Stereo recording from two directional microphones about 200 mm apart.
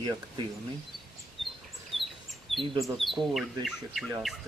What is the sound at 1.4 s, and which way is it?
Chirp, centre (ahead or behind).